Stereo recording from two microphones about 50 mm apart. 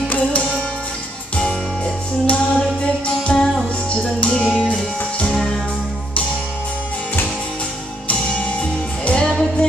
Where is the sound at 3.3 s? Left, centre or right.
Left.